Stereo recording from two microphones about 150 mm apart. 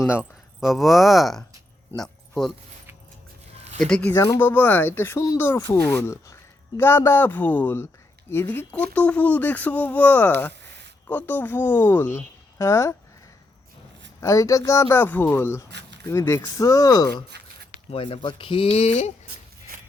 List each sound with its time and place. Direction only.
0.0 s speech: 5° right (ahead or behind)
2.0 s a sound: 5° left (ahead or behind)
3.8 s speech: 5° left (ahead or behind)
14.2 s speech: 20° left (ahead or behind)
17.9 s speech: 35° left (ahead or behind)